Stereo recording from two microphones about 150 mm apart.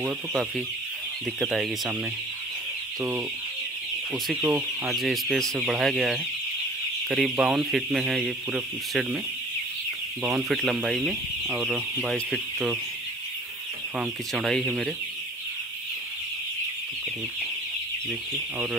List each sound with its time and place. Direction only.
0.3 s speech: centre (ahead or behind)
3.0 s speech: 15° right (ahead or behind)
4.5 s speech: 5° right (ahead or behind)
10.2 s speech: 5° right (ahead or behind)
13.9 s speech: centre (ahead or behind)